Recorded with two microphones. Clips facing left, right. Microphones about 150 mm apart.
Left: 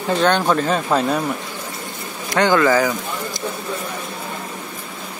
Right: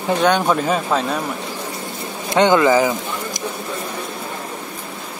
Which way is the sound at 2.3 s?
20° right (ahead or behind).